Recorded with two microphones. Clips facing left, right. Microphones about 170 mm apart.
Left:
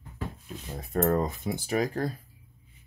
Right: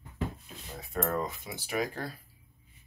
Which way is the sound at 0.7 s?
40° left (ahead or behind).